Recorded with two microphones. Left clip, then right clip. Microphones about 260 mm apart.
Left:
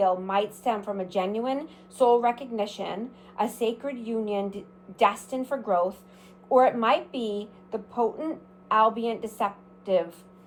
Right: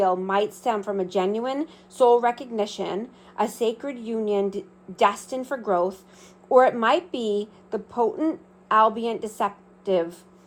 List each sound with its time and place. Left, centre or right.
0.0 s a woman's voice: right